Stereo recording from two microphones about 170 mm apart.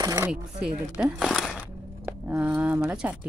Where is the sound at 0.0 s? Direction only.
20° right (ahead or behind).